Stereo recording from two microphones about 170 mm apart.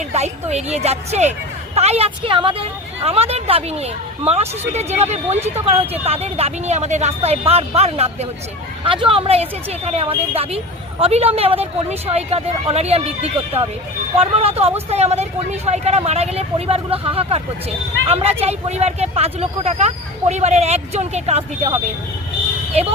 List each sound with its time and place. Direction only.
0.1 s speech: 40° right (ahead or behind)